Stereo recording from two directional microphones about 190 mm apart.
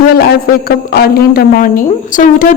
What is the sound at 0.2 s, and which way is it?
A woman's voice, 55° left (ahead or behind).